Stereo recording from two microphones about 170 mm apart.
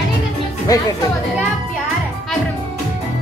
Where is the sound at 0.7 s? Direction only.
20° left (ahead or behind).